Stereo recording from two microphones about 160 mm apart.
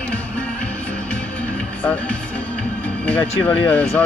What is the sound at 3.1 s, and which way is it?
Speech, 10° left (ahead or behind).